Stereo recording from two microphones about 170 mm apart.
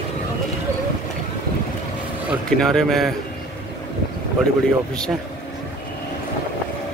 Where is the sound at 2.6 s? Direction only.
Centre (ahead or behind).